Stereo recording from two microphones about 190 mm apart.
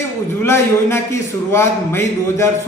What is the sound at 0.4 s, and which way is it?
A man's voice, 15° left (ahead or behind).